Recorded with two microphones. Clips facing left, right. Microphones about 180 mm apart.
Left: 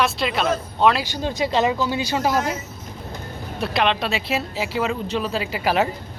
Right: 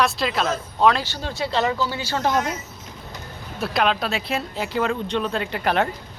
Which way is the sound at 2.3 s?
5° left (ahead or behind).